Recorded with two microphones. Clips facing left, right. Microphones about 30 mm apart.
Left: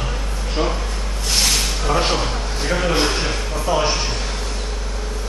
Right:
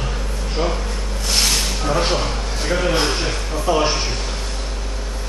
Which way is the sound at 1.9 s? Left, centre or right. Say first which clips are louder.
Left 1 dB; centre.